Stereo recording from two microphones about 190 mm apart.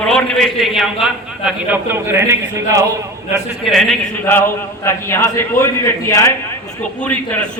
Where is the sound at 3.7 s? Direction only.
Centre (ahead or behind).